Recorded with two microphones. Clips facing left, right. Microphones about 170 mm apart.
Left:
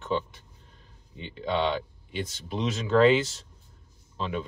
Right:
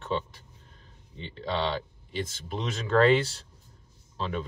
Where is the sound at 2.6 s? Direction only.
Centre (ahead or behind).